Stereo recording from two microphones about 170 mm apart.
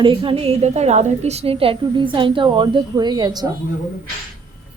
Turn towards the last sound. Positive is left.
turn(degrees=-25)  # may be behind; listen again after turning